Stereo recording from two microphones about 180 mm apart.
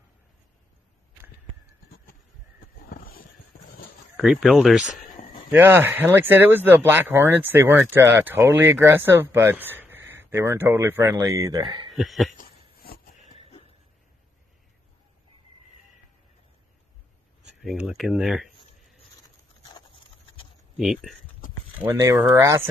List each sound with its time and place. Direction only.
2.9 s vehicle: 55° left (ahead or behind)
4.2 s speech: 5° right (ahead or behind); by 11.9 s 20° right (ahead or behind)
11.9 s a sound: centre (ahead or behind)
12.8 s a sound: 55° left (ahead or behind)
17.6 s speech: centre (ahead or behind)
20.7 s speech: centre (ahead or behind)
21.7 s speech: 15° right (ahead or behind)